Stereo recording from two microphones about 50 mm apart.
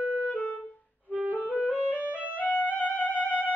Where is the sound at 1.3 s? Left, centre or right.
Left.